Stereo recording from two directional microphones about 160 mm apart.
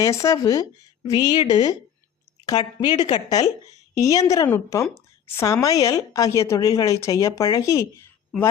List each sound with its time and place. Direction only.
0.0 s speech: 20° left (ahead or behind)